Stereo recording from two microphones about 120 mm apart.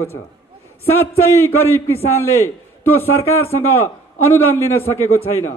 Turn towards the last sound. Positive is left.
turn(degrees=20)  # may be behind; listen again after turning